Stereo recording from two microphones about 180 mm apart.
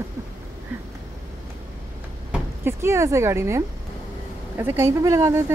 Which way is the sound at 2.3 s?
15° right (ahead or behind).